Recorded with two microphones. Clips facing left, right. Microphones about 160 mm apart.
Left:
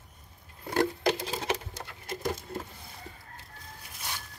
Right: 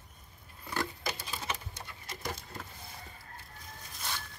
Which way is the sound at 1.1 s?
85° left.